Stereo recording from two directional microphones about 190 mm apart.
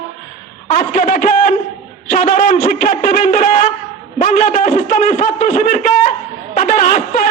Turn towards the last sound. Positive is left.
turn(degrees=45)  # may be behind; listen again after turning